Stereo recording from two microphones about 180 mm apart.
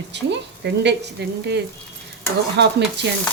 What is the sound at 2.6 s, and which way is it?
Speech, 75° right (ahead or behind).